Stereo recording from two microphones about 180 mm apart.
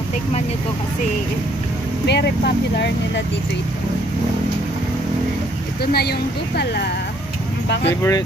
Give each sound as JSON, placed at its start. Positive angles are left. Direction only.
{"t": 2.0, "sound": "speech", "side_deg": 70}
{"t": 5.8, "sound": "speech", "side_deg": 60}
{"t": 7.9, "sound": "speech", "side_deg": 15}